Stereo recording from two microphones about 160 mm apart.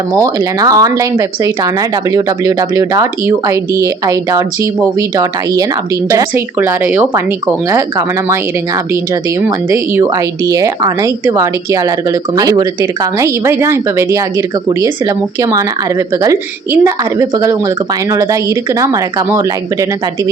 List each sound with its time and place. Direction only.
0.1 s speech: 20° right (ahead or behind)